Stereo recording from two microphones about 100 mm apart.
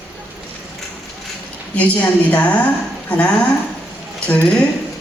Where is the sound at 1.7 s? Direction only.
15° left (ahead or behind).